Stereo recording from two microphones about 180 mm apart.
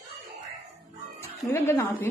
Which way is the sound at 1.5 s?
15° left (ahead or behind).